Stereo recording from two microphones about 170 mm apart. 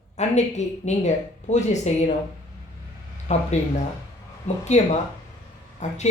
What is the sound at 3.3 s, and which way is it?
Speech, 40° left (ahead or behind).